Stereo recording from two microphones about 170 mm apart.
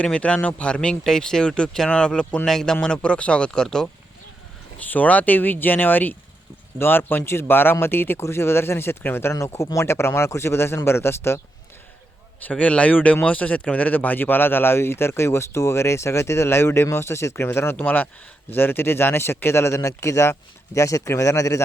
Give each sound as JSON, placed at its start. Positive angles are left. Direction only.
{"t": 0.0, "sound": "speech", "side_deg": 5}
{"t": 12.4, "sound": "speech", "side_deg": 10}